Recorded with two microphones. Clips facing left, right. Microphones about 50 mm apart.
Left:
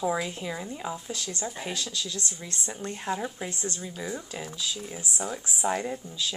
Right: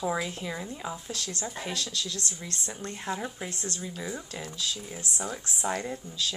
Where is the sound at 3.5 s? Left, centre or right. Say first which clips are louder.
Left 2 dB; left.